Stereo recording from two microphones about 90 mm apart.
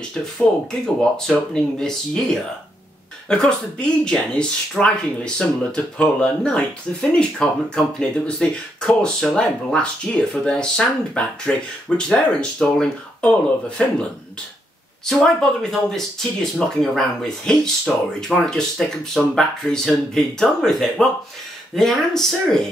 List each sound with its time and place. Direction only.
0.1 s speech: 5° left (ahead or behind)
15.0 s speech: 5° left (ahead or behind)